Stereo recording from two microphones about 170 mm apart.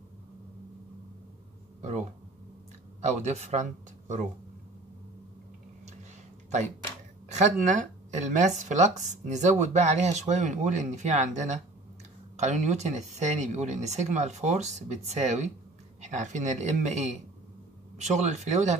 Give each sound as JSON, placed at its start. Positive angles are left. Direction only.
{"t": 1.8, "sound": "speech", "side_deg": -45}
{"t": 3.1, "sound": "speech", "side_deg": -40}
{"t": 7.2, "sound": "speech", "side_deg": -45}